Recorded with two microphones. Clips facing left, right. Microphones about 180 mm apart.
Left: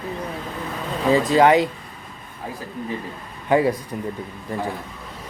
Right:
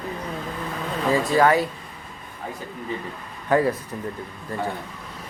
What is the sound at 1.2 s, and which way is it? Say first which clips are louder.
Speech: left 3 dB; 20° left (ahead or behind).